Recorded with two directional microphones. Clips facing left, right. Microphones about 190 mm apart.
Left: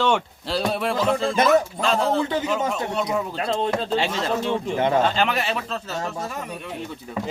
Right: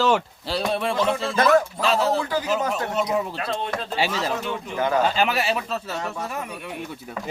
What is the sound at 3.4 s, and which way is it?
Speech, 30° left (ahead or behind).